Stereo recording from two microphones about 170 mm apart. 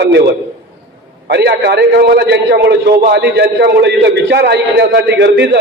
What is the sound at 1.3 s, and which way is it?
A man's voice, 80° right.